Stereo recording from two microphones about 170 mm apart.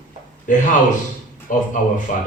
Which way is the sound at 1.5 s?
50° left (ahead or behind).